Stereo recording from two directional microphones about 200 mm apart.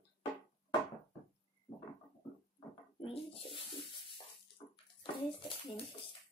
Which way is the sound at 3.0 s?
25° left (ahead or behind).